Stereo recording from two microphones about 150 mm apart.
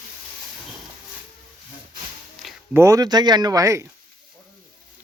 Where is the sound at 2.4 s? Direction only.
Centre (ahead or behind).